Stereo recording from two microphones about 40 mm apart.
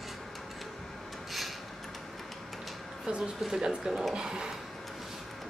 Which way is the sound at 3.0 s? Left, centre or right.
Right.